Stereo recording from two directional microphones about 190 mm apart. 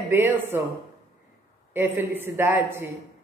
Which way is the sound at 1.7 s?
10° right (ahead or behind).